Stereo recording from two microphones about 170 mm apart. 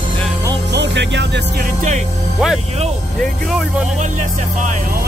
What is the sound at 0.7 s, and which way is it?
Music, 90° right.